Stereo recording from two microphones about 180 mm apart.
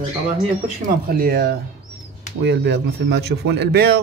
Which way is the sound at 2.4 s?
70° right (ahead or behind).